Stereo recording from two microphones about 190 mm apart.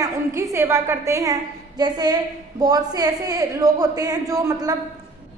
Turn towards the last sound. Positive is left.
turn(degrees=-20)  # may be behind; listen again after turning